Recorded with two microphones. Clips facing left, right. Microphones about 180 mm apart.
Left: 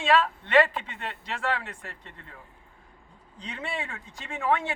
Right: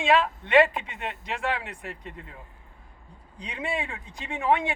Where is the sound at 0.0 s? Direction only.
15° right (ahead or behind).